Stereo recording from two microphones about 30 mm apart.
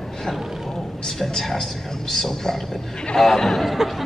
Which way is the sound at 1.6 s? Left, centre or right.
Centre.